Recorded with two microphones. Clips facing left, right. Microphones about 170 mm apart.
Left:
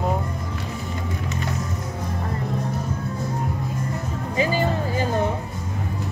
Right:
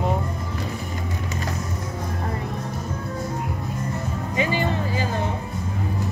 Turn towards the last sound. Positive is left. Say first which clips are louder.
# left 2 dB
turn(degrees=40)  # may be behind; listen again after turning